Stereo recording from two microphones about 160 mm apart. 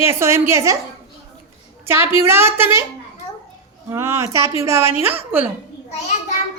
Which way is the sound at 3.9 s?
15° right (ahead or behind).